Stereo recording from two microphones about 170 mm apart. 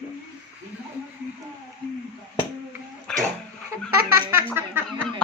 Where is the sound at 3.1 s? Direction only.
5° left (ahead or behind).